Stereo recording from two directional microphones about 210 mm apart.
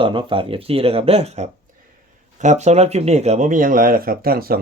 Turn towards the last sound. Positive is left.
turn(degrees=-45)  # may be behind; listen again after turning